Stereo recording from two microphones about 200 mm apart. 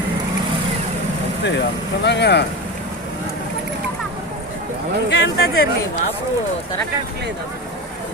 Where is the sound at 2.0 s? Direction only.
60° left (ahead or behind).